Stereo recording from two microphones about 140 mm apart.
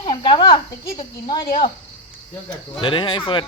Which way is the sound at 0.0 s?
35° left (ahead or behind).